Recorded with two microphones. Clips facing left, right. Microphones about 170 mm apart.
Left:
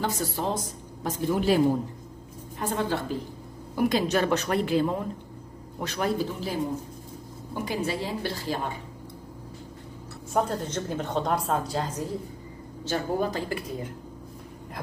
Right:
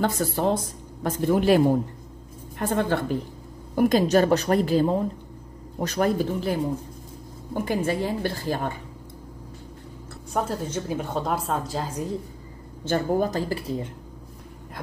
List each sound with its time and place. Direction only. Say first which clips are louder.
0.0 s speech: right 5 dB; 55° right (ahead or behind)
2.6 s speech: right 4 dB; 55° right (ahead or behind)
3.7 s a woman's voice: right 5 dB; 45° right (ahead or behind)
7.6 s a woman's voice: right 4 dB; 50° right (ahead or behind)
10.3 s a woman's voice: even; 5° right (ahead or behind)
12.8 s a woman's voice: right 4 dB; 45° right (ahead or behind); by 13.8 s 30° right (ahead or behind)